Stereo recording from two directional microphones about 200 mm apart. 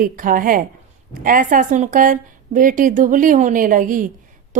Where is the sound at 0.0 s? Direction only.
45° right (ahead or behind).